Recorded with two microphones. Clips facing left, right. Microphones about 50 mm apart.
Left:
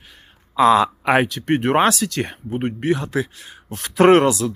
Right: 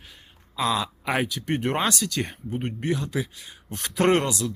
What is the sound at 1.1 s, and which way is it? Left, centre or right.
Speech, centre.